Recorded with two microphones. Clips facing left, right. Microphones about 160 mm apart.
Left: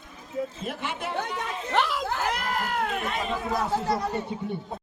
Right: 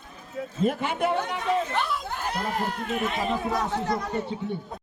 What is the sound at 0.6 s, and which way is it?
Speech, 55° right (ahead or behind).